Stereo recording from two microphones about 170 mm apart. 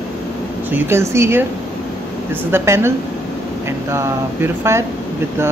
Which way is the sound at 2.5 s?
15° right (ahead or behind).